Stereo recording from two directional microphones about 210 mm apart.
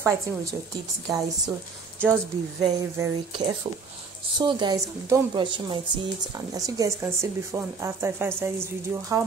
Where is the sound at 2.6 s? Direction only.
20° right (ahead or behind).